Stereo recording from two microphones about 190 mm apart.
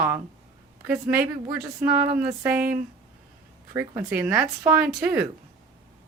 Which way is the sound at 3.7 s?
10° right (ahead or behind).